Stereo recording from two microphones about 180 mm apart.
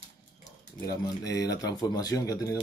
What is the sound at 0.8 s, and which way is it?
Speech, 20° left (ahead or behind).